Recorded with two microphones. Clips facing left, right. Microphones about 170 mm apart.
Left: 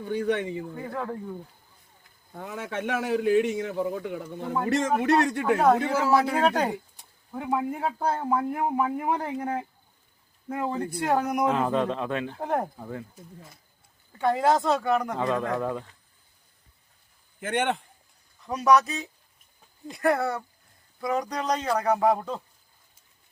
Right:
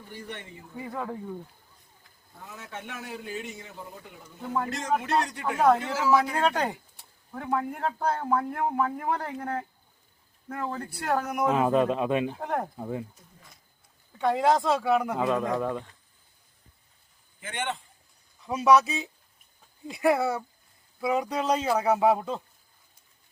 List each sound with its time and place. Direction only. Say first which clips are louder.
0.0 s a man's voice: left 14 dB; 85° left
0.8 s speech: left 2 dB; 5° right (ahead or behind)
2.3 s a man's voice: left 9 dB; 90° left; by 5.4 s 65° left (ahead or behind)
5.5 s a man's voice: right 1 dB; centre (ahead or behind)
11.4 s speech: right 1 dB; 10° right (ahead or behind)
12.4 s a man's voice: left 3 dB; 5° left (ahead or behind)
12.8 s speech: right 3 dB; 20° right (ahead or behind)
14.1 s speech: left 1 dB; centre (ahead or behind)
17.4 s a man's voice: left 7 dB; 55° left (ahead or behind)
18.4 s speech: even; 5° right (ahead or behind)